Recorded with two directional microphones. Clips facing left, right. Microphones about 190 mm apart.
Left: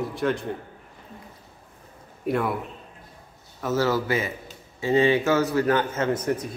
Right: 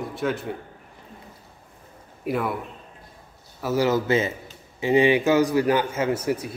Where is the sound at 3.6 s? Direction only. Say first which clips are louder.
Right 2 dB; 10° right (ahead or behind).